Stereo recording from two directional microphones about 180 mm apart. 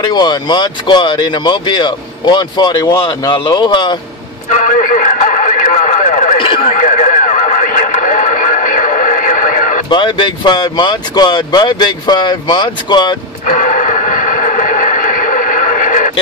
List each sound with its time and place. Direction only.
0.0 s speech: 25° left (ahead or behind)
4.5 s radio: 45° left (ahead or behind)
6.3 s radio: 30° left (ahead or behind)
6.7 s radio: 45° left (ahead or behind)
9.8 s speech: 25° left (ahead or behind)
13.5 s a sound: 45° left (ahead or behind)